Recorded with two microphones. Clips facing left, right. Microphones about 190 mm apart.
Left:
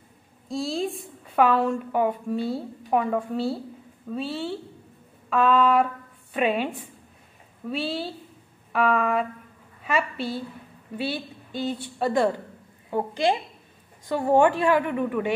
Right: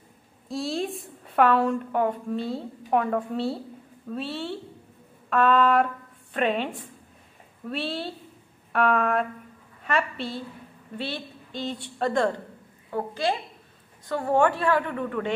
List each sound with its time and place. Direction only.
0.5 s a woman's voice: centre (ahead or behind)
12.9 s a woman's voice: 15° left (ahead or behind)